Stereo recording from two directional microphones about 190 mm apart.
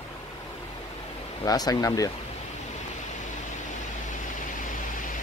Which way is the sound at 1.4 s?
20° left (ahead or behind).